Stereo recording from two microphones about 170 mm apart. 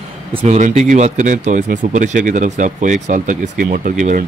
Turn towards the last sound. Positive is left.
turn(degrees=-50)  # may be behind; listen again after turning